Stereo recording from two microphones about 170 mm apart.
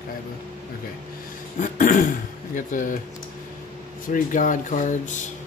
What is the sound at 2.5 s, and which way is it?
Speech, 50° left (ahead or behind).